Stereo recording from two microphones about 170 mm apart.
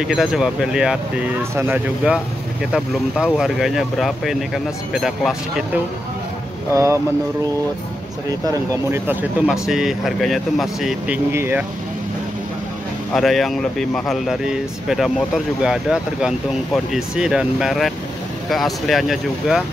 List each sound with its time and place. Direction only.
0.1 s speech: 5° right (ahead or behind)
6.7 s speech: 15° right (ahead or behind)
8.5 s speech: 15° right (ahead or behind)
11.3 s speech: 15° right (ahead or behind)
13.1 s speech: centre (ahead or behind)